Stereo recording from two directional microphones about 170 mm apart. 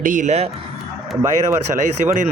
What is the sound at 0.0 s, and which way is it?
Speech, 50° right (ahead or behind).